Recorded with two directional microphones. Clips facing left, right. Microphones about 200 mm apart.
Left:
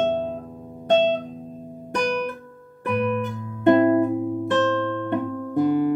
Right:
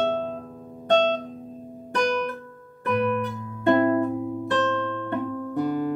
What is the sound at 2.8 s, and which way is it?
Music, 15° left (ahead or behind).